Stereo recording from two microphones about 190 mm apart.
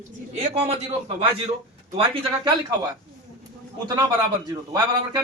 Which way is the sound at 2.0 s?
20° right (ahead or behind).